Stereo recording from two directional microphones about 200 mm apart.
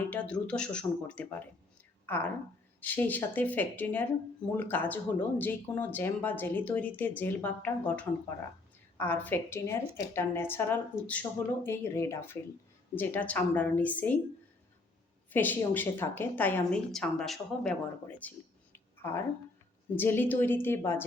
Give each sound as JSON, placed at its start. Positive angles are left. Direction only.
{"t": 0.1, "sound": "a woman's voice", "side_deg": 5}
{"t": 15.3, "sound": "a woman's voice", "side_deg": 10}